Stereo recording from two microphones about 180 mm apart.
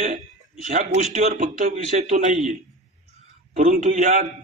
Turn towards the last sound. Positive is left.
turn(degrees=-45)  # may be behind; listen again after turning